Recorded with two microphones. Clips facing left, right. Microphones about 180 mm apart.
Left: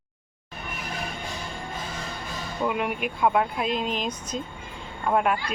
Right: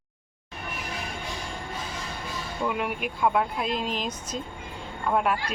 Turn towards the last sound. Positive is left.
turn(degrees=0)  # may be behind; listen again after turning